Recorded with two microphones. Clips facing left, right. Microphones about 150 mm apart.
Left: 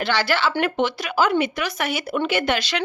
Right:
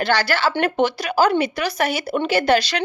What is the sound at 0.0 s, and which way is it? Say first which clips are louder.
A woman's voice: right 2 dB; 40° right (ahead or behind).